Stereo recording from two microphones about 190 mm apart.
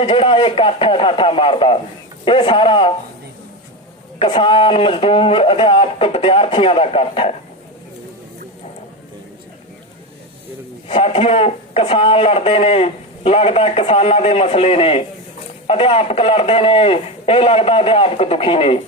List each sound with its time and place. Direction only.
0.0 s speech: 30° left (ahead or behind)
4.2 s speech: 25° left (ahead or behind)
10.8 s speech: 30° left (ahead or behind)